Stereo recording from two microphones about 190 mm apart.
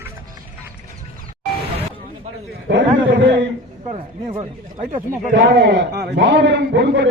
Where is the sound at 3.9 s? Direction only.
35° right (ahead or behind).